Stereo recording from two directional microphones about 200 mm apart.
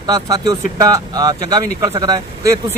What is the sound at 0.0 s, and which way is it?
A man's voice, 20° right (ahead or behind).